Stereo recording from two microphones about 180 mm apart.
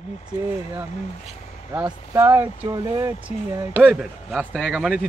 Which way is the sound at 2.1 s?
15° right (ahead or behind).